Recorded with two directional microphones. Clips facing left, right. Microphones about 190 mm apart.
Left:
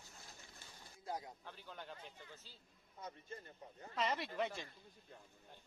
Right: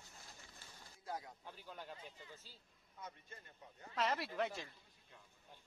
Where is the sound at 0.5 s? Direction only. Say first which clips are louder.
Left 1 dB; 20° left (ahead or behind).